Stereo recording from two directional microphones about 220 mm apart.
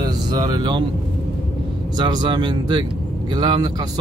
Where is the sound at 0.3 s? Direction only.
20° right (ahead or behind).